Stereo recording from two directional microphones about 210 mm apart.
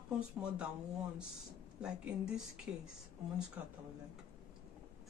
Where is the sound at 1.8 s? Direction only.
5° right (ahead or behind).